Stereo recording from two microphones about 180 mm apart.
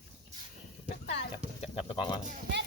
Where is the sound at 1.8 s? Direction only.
30° left (ahead or behind).